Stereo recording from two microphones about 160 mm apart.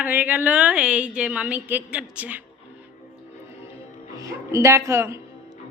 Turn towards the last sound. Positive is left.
turn(degrees=-15)  # may be behind; listen again after turning